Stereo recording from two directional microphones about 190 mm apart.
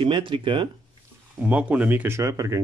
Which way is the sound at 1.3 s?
5° right (ahead or behind).